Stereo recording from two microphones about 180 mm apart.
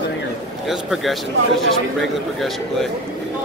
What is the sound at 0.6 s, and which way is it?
Speech, centre (ahead or behind).